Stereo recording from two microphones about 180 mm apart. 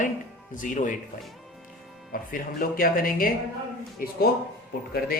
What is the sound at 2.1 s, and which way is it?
Speech, 50° left (ahead or behind).